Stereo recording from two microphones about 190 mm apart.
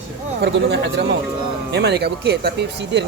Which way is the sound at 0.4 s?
60° right (ahead or behind).